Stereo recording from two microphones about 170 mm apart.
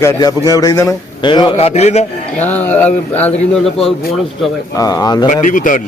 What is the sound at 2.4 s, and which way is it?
A man's voice, 10° left (ahead or behind).